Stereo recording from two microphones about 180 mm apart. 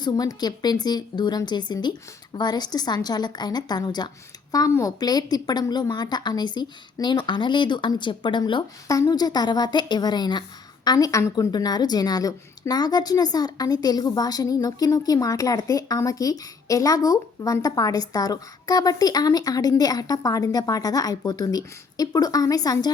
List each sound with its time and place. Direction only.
0.0 s a woman's voice: 20° left (ahead or behind)